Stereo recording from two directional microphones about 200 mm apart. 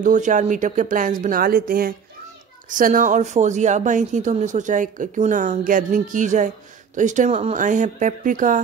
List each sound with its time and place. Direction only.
0.0 s speech: 40° right (ahead or behind)